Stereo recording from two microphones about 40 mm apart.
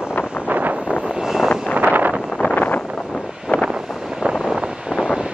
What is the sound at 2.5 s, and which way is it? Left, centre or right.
Vehicle, left.